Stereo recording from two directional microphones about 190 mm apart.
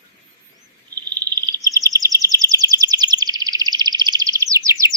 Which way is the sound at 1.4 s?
20° right (ahead or behind).